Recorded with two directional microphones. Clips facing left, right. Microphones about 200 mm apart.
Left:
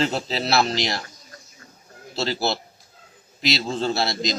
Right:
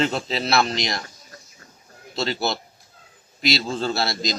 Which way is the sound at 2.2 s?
30° left (ahead or behind).